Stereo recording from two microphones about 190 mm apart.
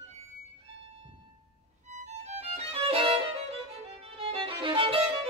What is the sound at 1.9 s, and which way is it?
Music, 35° right (ahead or behind).